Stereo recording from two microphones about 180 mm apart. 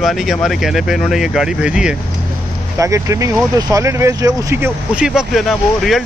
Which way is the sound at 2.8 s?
15° right (ahead or behind).